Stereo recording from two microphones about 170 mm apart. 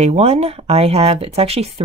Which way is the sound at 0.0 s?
40° right (ahead or behind).